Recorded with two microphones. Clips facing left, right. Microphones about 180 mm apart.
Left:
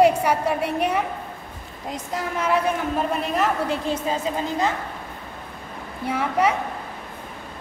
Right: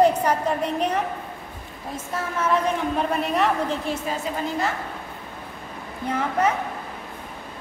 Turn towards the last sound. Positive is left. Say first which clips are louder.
# left 1 dB
turn(degrees=10)  # may be behind; listen again after turning